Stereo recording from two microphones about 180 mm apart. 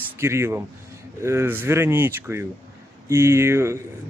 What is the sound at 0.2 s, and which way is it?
Speech, 15° right (ahead or behind).